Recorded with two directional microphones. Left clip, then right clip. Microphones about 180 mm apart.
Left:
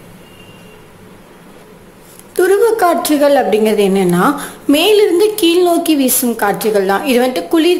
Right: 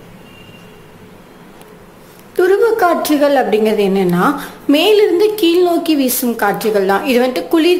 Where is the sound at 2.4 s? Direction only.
5° left (ahead or behind).